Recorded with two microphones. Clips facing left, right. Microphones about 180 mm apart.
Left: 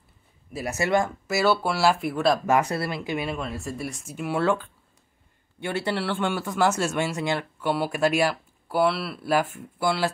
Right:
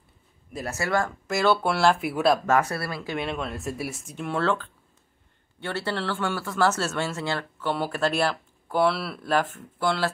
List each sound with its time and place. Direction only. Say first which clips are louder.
0.7 s speech: left 3 dB; 20° left (ahead or behind)
1.2 s speech: even; 5° left (ahead or behind)
2.4 s speech: left 1 dB; 15° left (ahead or behind)
3.3 s speech: even; centre (ahead or behind)